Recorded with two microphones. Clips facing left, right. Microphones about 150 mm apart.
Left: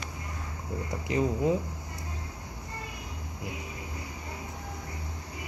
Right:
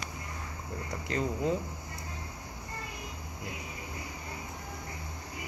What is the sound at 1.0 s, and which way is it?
Speech, 15° left (ahead or behind).